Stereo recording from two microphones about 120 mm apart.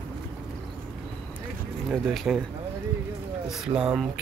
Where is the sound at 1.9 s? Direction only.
Centre (ahead or behind).